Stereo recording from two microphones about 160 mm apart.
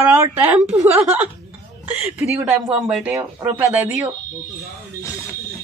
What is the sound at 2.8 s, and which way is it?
A woman's voice, 5° right (ahead or behind).